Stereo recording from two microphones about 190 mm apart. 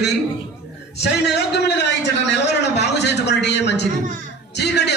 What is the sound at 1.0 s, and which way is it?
Speech, 60° left (ahead or behind).